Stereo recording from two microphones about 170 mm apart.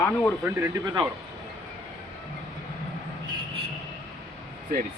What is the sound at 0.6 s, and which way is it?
Speech, 15° right (ahead or behind).